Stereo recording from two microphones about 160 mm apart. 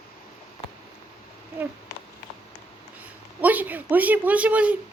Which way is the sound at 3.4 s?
10° right (ahead or behind).